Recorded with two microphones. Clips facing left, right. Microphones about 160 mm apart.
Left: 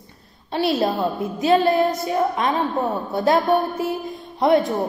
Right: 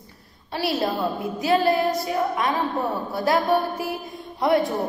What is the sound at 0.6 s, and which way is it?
A woman's voice, 25° left (ahead or behind).